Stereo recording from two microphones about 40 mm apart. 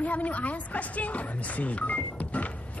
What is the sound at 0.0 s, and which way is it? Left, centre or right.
Speech, left.